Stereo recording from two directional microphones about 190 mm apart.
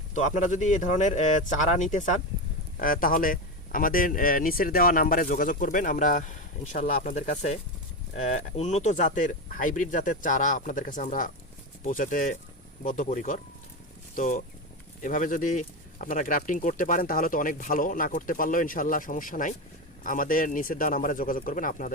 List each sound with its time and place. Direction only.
0.1 s speech: 40° left (ahead or behind)